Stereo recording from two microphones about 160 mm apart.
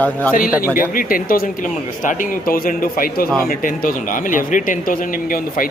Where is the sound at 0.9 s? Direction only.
60° left (ahead or behind).